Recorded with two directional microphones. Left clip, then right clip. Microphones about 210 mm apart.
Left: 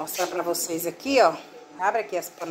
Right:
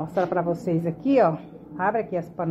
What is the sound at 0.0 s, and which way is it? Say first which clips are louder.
A woman's voice: right 3 dB; 15° left (ahead or behind).